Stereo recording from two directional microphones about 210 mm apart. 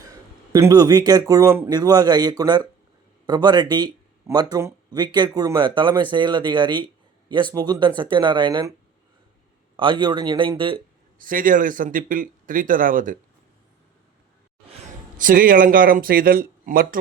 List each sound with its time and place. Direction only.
0.1 s a man's voice: 15° right (ahead or behind)
9.7 s speech: 20° right (ahead or behind)
11.2 s speech: 40° right (ahead or behind)
15.2 s speech: 40° right (ahead or behind)